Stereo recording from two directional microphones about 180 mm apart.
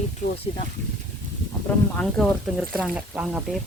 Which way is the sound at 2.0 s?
5° left (ahead or behind).